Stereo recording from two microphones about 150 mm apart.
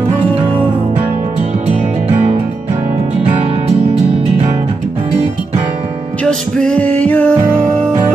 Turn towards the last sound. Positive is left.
turn(degrees=10)  # may be behind; listen again after turning